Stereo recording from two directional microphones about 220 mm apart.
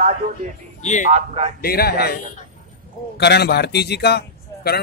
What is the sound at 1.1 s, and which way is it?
Speech, 30° right (ahead or behind).